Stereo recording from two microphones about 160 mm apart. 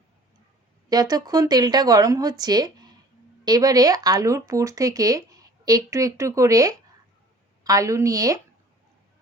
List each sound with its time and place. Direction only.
0.9 s speech: 25° right (ahead or behind)